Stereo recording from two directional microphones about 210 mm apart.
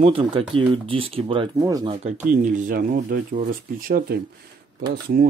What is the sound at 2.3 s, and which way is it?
Speech, 40° right (ahead or behind).